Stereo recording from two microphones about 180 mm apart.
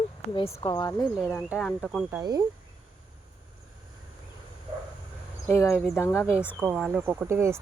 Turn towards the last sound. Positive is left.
turn(degrees=-15)  # may be behind; listen again after turning